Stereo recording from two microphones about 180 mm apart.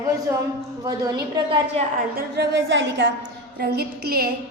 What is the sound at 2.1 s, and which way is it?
Speech, 65° right (ahead or behind).